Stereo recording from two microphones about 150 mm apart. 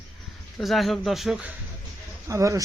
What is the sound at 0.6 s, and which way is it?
Speech, centre (ahead or behind).